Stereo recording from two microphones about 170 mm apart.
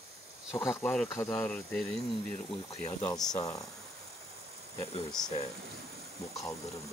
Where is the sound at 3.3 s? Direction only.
20° left (ahead or behind).